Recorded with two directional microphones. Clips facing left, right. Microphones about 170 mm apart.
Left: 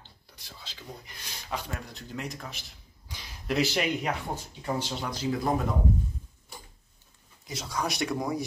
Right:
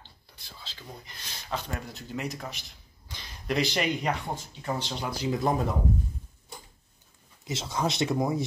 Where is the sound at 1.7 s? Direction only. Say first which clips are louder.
Right 2 dB; centre (ahead or behind).